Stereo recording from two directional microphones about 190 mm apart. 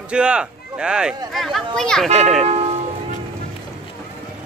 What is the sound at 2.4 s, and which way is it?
Music, 35° right (ahead or behind).